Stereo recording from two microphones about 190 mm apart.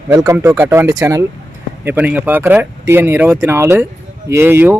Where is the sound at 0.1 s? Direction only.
10° right (ahead or behind).